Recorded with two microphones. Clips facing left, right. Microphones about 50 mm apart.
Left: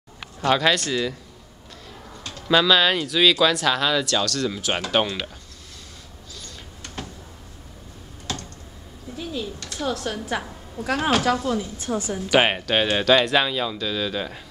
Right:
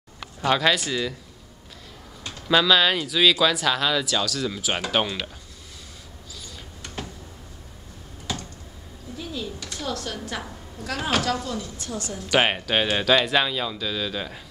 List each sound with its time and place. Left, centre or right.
0.4 s speech: centre
2.4 s speech: centre
6.4 s a sound: centre
8.3 s computer keyboard: centre
9.2 s a sound: centre
9.8 s a woman's voice: centre
11.4 s speech: left
12.3 s speech: centre